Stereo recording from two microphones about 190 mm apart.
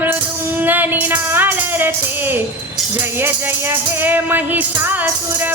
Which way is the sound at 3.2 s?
10° right (ahead or behind).